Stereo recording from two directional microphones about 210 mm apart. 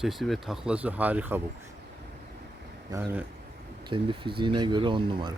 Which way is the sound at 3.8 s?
25° right (ahead or behind).